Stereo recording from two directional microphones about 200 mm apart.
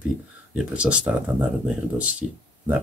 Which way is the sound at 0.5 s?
5° right (ahead or behind).